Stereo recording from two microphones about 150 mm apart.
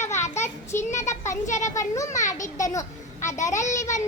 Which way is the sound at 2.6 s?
20° left (ahead or behind).